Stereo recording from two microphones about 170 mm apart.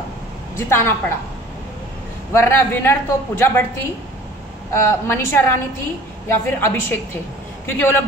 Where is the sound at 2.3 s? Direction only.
15° left (ahead or behind).